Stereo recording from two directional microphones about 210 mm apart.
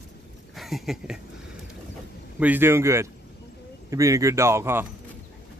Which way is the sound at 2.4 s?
10° right (ahead or behind).